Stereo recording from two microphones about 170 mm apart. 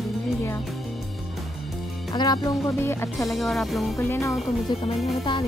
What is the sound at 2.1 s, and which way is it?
Speech, 20° left (ahead or behind).